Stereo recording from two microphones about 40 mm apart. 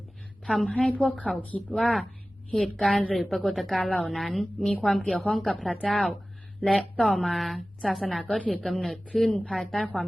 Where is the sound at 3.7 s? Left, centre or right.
Left.